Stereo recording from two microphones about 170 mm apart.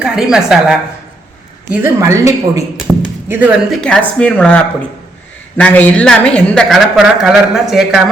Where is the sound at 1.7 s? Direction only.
15° right (ahead or behind).